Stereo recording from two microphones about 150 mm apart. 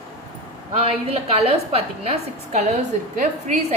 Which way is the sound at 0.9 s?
40° right (ahead or behind).